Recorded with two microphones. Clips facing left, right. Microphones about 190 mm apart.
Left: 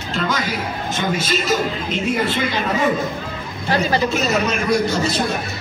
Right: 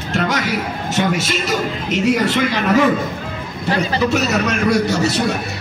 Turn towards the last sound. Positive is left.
turn(degrees=-70)  # may be behind; listen again after turning